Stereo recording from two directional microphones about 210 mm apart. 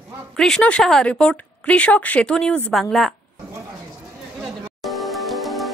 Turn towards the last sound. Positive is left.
turn(degrees=0)  # may be behind; listen again after turning